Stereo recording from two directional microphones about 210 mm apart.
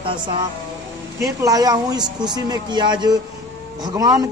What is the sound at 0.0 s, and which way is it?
Speech, 25° right (ahead or behind).